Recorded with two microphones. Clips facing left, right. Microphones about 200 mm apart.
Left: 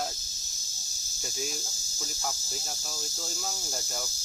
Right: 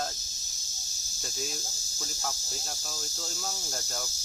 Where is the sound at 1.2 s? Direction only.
Centre (ahead or behind).